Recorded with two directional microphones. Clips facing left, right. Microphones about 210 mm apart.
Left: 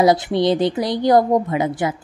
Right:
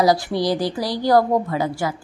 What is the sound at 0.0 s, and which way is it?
Speech, 20° left (ahead or behind).